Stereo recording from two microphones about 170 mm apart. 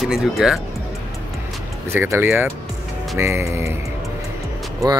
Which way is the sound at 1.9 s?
15° right (ahead or behind).